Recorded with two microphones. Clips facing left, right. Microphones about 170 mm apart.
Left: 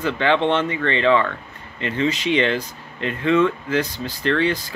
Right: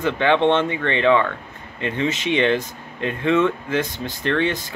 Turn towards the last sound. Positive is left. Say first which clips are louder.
# left 1 dB
turn(degrees=-20)  # may be behind; listen again after turning